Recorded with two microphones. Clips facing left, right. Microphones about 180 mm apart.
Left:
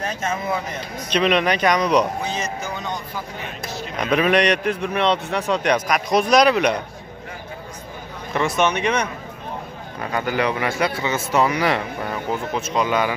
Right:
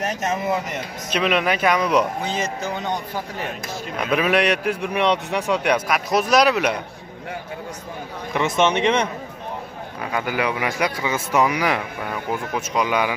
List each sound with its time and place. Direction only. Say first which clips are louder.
1.1 s a man's voice: left 2 dB; 5° right (ahead or behind)
3.9 s a man's voice: left 2 dB; 5° right (ahead or behind)
8.3 s a man's voice: right 1 dB; 20° right (ahead or behind)
10.1 s a man's voice: left 2 dB; 10° right (ahead or behind)